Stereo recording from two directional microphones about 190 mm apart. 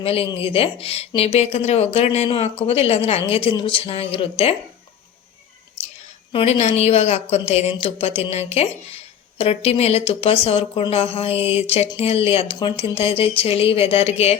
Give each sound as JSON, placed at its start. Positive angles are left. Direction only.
{"t": 0.0, "sound": "a woman's voice", "side_deg": 30}
{"t": 6.3, "sound": "speech", "side_deg": 35}